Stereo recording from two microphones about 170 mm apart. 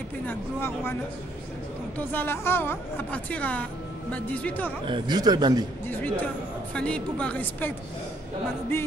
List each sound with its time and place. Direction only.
0.3 s a woman's voice: 15° left (ahead or behind)
2.0 s a woman's voice: 10° left (ahead or behind)
4.8 s a man's voice: 25° right (ahead or behind)
5.9 s a woman's voice: 10° left (ahead or behind)